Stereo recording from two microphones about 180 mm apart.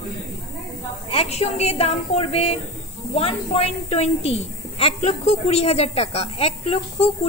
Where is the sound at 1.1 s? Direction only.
35° left (ahead or behind).